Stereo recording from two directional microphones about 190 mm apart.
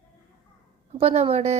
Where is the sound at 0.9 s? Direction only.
35° right (ahead or behind).